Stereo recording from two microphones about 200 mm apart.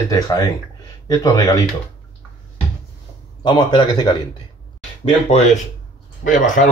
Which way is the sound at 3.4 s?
20° left (ahead or behind).